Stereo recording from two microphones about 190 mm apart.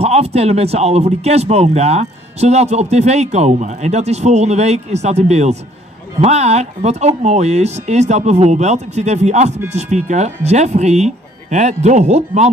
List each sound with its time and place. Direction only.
0.0 s speech: 35° right (ahead or behind)